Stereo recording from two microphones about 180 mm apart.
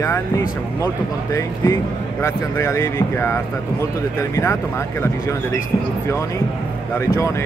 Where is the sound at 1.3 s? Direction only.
15° left (ahead or behind).